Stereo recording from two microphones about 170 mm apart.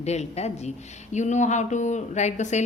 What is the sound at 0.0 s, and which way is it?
A man's voice, 40° left (ahead or behind).